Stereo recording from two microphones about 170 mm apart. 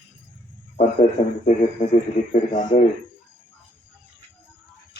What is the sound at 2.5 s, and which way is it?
Speech, 50° left (ahead or behind).